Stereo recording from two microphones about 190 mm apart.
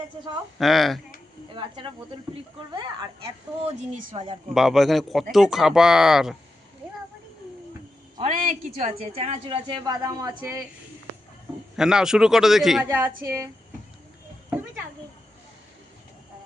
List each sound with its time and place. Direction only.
0.6 s speech: centre (ahead or behind)
1.5 s a woman's voice: 25° right (ahead or behind)
4.5 s speech: centre (ahead or behind)
8.2 s a woman's voice: 40° right (ahead or behind); by 10.6 s 20° right (ahead or behind)
11.8 s speech: 5° right (ahead or behind)